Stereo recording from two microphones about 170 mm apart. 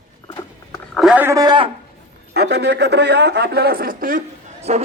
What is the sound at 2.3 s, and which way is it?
A man's voice, 75° right (ahead or behind).